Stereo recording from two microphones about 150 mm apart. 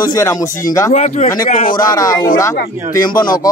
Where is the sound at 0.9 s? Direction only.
50° left (ahead or behind).